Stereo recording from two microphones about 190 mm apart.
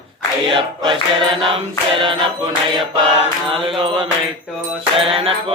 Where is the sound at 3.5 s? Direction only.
30° right (ahead or behind).